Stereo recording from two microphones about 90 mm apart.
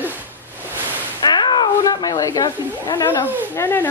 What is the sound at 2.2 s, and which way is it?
Speech, 45° left (ahead or behind).